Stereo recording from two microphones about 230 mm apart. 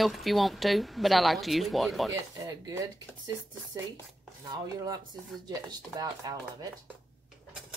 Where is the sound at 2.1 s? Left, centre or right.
Centre.